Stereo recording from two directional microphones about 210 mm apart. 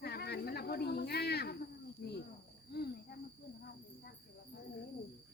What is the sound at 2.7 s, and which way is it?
Cricket, 50° left (ahead or behind).